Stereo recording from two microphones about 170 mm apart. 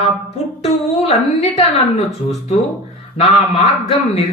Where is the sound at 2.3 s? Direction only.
40° left (ahead or behind).